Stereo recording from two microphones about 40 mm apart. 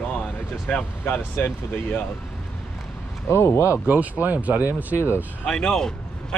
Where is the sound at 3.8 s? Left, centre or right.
Right.